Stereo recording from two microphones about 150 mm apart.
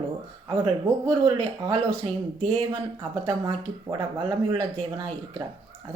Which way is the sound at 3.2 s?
30° right (ahead or behind).